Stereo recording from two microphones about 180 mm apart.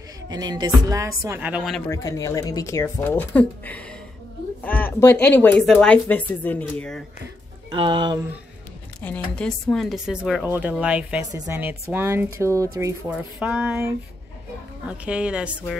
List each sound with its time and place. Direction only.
0.3 s speech: 25° right (ahead or behind)
1.4 s speech: 5° right (ahead or behind)
1.9 s speech: 20° left (ahead or behind)
7.7 s speech: 25° right (ahead or behind)
9.0 s speech: 5° left (ahead or behind)